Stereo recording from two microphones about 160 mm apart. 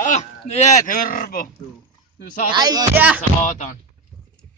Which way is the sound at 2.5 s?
25° right (ahead or behind).